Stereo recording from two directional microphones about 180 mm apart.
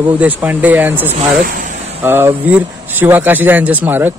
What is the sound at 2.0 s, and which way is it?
Speech, 10° right (ahead or behind).